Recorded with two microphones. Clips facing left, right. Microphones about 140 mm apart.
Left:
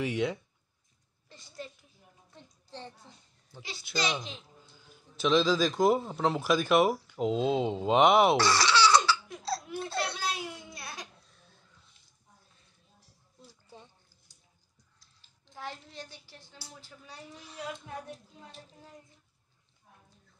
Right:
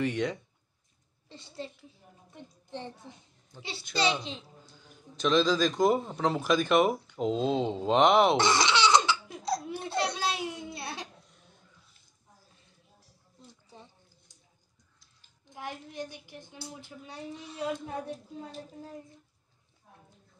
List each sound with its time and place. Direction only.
0.0 s speech: 10° left (ahead or behind)
1.3 s a woman's voice: 30° right (ahead or behind)
2.7 s a woman's voice: 20° right (ahead or behind)
3.9 s a woman's voice: 30° right (ahead or behind)
4.7 s a man's voice: 5° left (ahead or behind)
8.4 s laughter: 20° right (ahead or behind)
15.4 s a woman's voice: 15° right (ahead or behind)